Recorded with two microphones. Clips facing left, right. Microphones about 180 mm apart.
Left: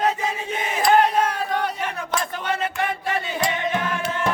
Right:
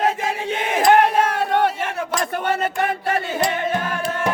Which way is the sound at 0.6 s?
65° right (ahead or behind).